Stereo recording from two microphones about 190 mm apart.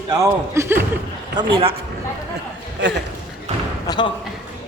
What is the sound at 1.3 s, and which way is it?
Speech, 25° right (ahead or behind).